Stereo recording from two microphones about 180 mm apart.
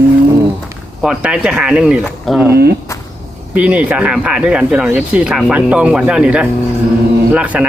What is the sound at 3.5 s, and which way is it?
Speech, 5° right (ahead or behind).